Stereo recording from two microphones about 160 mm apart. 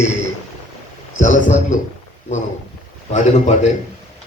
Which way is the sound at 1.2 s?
50° left (ahead or behind).